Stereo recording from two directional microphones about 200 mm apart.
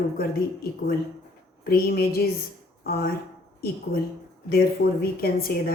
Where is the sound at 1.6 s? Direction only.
50° left (ahead or behind).